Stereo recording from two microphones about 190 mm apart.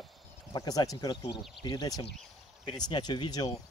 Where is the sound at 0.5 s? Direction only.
20° left (ahead or behind).